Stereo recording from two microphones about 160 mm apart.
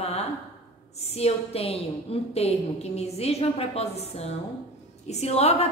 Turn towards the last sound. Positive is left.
turn(degrees=40)  # may be behind; listen again after turning